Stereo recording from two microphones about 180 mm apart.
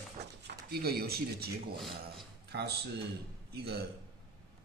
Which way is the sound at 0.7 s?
60° right (ahead or behind).